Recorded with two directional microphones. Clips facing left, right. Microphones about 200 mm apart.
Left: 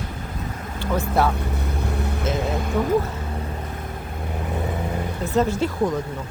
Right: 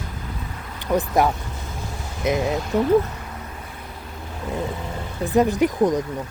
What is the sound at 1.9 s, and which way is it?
Boat, 60° left (ahead or behind).